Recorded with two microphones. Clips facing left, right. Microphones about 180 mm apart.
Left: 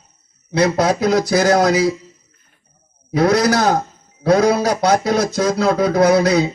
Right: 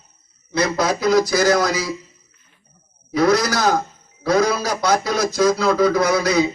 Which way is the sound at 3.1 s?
60° left (ahead or behind).